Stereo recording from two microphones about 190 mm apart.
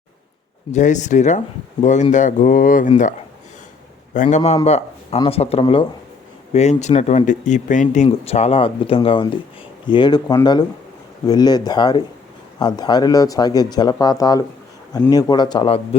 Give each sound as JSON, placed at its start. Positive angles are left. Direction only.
{"t": 0.7, "sound": "speech", "side_deg": 40}
{"t": 4.1, "sound": "a man's voice", "side_deg": 40}